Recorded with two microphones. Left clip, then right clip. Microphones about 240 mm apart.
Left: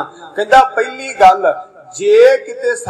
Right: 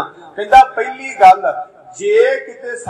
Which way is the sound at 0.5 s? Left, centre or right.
Left.